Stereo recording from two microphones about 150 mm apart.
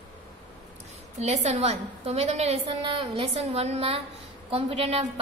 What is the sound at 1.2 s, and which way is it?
A woman's voice, 50° right (ahead or behind).